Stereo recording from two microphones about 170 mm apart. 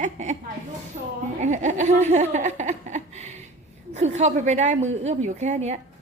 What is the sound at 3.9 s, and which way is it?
A woman's voice, 40° right (ahead or behind).